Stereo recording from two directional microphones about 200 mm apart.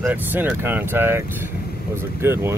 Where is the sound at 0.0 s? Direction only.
10° right (ahead or behind).